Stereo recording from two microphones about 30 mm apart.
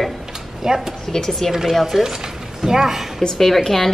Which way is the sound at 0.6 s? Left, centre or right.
Centre.